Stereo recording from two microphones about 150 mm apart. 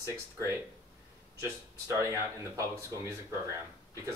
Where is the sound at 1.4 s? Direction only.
20° right (ahead or behind).